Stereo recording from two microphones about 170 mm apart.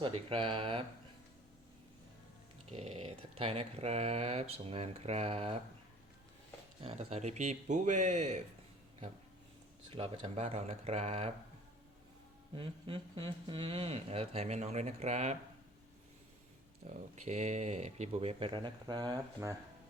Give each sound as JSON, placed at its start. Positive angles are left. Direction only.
{"t": 0.0, "sound": "speech", "side_deg": -30}
{"t": 2.7, "sound": "speech", "side_deg": -35}
{"t": 6.8, "sound": "speech", "side_deg": -35}
{"t": 9.9, "sound": "speech", "side_deg": -35}
{"t": 12.5, "sound": "speech", "side_deg": -30}
{"t": 16.8, "sound": "speech", "side_deg": -40}